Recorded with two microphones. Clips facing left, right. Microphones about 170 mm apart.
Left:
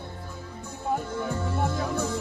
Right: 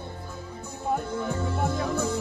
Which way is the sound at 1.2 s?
Centre (ahead or behind).